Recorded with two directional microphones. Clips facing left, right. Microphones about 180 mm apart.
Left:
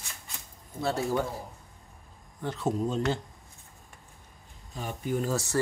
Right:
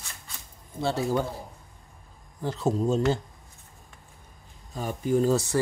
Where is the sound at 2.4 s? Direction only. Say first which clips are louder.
Right 3 dB; 35° right (ahead or behind).